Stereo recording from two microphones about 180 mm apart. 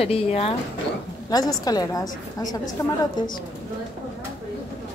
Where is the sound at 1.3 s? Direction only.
20° left (ahead or behind).